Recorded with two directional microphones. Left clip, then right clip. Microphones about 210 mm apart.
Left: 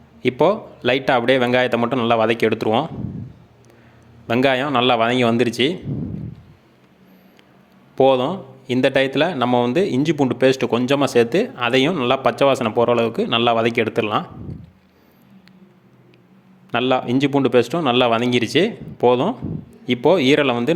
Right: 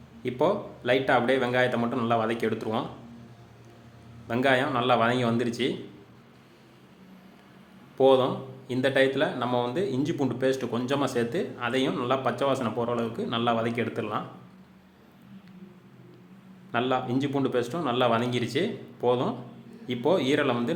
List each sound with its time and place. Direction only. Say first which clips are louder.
0.2 s speech: left 9 dB; 40° left (ahead or behind)
4.3 s speech: left 7 dB; 40° left (ahead or behind)
7.9 s speech: left 5 dB; 40° left (ahead or behind)
16.7 s speech: left 8 dB; 40° left (ahead or behind)